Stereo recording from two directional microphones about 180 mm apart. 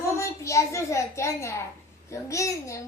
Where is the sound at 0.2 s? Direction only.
15° left (ahead or behind).